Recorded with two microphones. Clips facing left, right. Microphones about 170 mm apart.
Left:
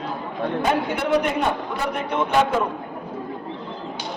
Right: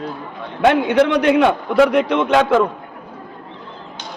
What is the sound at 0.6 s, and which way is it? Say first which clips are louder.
A man's voice: right 12 dB; 80° right.